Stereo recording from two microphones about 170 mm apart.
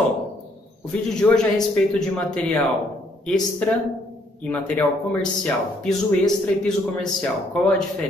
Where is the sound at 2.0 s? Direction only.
5° left (ahead or behind).